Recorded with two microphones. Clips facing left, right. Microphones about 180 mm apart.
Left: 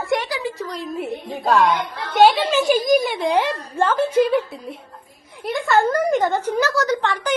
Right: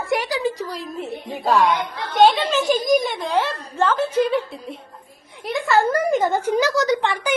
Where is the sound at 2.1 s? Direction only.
10° left (ahead or behind).